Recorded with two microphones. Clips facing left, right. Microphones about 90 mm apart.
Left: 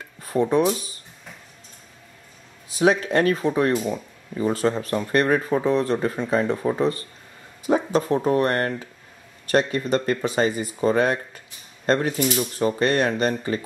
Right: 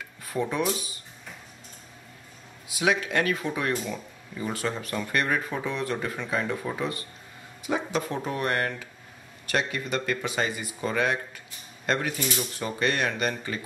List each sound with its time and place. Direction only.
0.2 s speech: 35° left (ahead or behind)
2.7 s speech: 35° left (ahead or behind)